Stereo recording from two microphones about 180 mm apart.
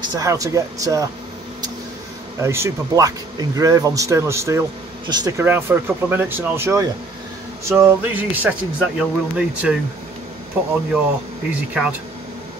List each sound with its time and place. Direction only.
0.1 s speech: 20° right (ahead or behind)
2.4 s speech: 15° right (ahead or behind)
5.4 s speech: 10° right (ahead or behind)
11.5 s speech: 5° right (ahead or behind)